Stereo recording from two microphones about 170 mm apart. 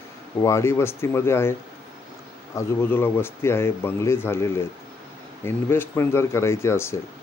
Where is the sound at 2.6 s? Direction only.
15° left (ahead or behind).